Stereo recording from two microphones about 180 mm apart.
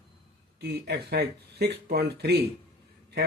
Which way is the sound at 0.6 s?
65° right (ahead or behind).